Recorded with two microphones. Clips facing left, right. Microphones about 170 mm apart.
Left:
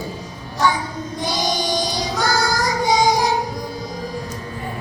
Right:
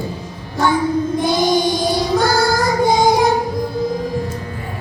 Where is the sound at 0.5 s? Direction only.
55° right (ahead or behind).